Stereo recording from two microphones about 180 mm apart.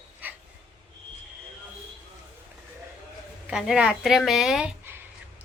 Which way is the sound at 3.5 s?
5° right (ahead or behind).